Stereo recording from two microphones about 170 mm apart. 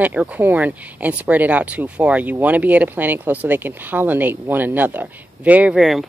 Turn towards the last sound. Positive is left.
turn(degrees=0)  # may be behind; listen again after turning